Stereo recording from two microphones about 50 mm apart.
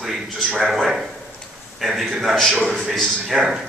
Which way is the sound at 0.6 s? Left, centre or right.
Centre.